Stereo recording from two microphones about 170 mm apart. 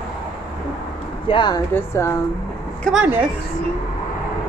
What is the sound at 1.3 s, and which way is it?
Speech, 25° left (ahead or behind).